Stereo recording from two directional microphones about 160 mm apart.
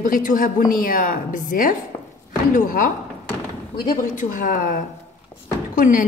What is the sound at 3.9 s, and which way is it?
A woman's voice, 55° left (ahead or behind).